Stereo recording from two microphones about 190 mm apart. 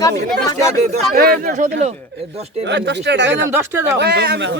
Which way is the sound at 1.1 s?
50° right (ahead or behind).